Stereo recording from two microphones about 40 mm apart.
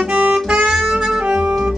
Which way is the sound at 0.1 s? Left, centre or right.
Right.